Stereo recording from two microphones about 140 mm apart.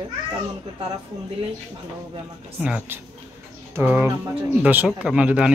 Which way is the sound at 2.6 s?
10° right (ahead or behind).